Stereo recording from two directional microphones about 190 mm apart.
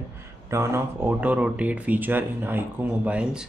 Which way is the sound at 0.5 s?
15° right (ahead or behind).